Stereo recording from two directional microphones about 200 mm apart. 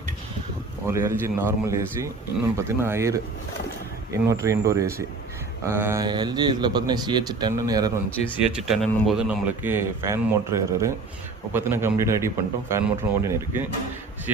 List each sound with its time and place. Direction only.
0.9 s a man's voice: 10° right (ahead or behind)
8.5 s a man's voice: centre (ahead or behind)